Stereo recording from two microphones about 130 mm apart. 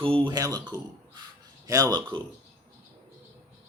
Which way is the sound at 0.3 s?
25° right (ahead or behind).